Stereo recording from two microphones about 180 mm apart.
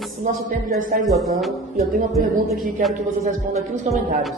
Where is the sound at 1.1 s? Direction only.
Centre (ahead or behind).